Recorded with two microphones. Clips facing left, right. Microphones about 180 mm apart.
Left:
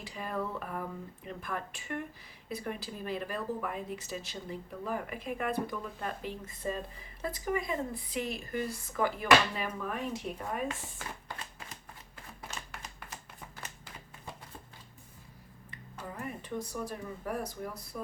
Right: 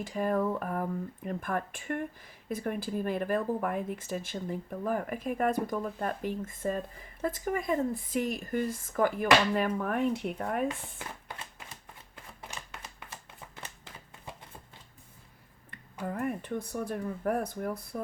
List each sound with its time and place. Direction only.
0.0 s speech: 50° right (ahead or behind)
16.0 s speech: 55° right (ahead or behind)